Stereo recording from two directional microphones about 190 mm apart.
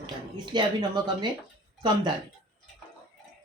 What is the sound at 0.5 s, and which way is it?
Speech, 25° right (ahead or behind).